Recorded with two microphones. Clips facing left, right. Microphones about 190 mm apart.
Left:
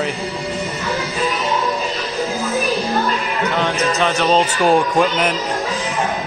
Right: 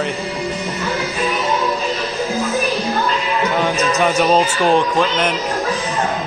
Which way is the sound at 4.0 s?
5° right (ahead or behind).